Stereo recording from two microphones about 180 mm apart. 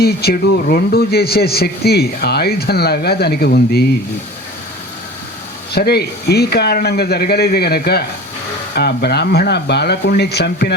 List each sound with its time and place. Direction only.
0.0 s speech: 60° left (ahead or behind)
5.7 s speech: 60° left (ahead or behind)